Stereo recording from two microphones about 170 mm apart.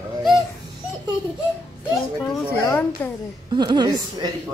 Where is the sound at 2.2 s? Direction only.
10° left (ahead or behind).